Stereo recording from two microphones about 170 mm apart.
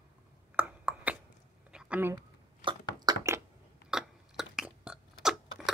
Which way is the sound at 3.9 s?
5° right (ahead or behind).